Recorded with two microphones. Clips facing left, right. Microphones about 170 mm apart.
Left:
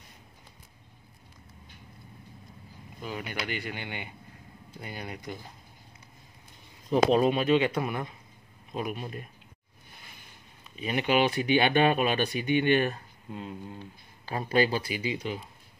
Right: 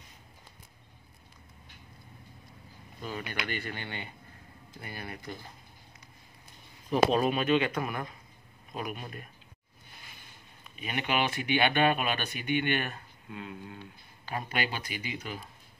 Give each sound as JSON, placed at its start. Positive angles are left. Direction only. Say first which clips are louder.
{"t": 3.0, "sound": "speech", "louder": "left 1 dB", "side_deg": 10}
{"t": 6.9, "sound": "speech", "louder": "left 3 dB", "side_deg": 20}
{"t": 10.8, "sound": "speech", "louder": "left 5 dB", "side_deg": 35}